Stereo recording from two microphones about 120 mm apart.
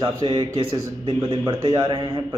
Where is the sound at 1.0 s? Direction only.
55° right (ahead or behind).